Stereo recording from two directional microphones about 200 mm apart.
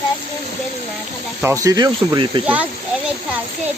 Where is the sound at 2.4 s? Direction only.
5° right (ahead or behind).